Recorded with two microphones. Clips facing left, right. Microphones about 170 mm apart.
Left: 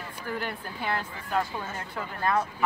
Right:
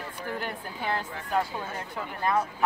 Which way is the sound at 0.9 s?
20° right (ahead or behind).